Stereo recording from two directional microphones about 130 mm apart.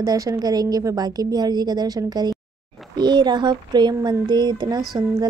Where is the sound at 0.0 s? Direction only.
25° right (ahead or behind).